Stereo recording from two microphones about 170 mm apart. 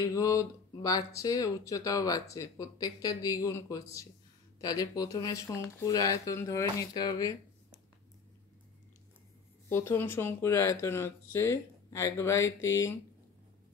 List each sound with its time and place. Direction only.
0.1 s speech: 20° left (ahead or behind)
9.7 s speech: 15° left (ahead or behind)